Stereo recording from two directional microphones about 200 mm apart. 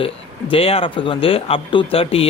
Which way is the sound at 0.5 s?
25° left (ahead or behind).